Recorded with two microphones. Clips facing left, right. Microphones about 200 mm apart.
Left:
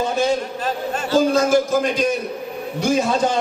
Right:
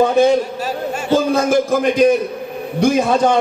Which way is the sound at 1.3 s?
55° right (ahead or behind).